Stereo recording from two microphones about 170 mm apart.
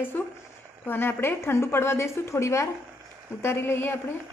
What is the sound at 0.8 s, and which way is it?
A woman's voice, 15° left (ahead or behind).